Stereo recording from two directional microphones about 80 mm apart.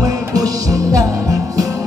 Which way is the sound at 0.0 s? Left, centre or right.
Right.